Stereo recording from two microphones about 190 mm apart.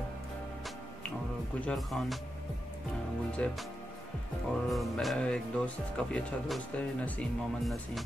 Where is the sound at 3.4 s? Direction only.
5° left (ahead or behind).